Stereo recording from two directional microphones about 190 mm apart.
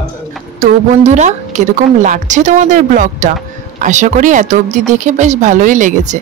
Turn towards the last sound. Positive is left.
turn(degrees=-40)  # may be behind; listen again after turning